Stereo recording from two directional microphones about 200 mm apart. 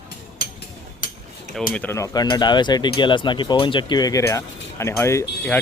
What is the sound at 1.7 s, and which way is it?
Speech, 10° left (ahead or behind).